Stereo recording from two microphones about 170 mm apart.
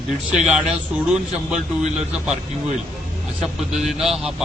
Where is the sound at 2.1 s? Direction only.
5° right (ahead or behind).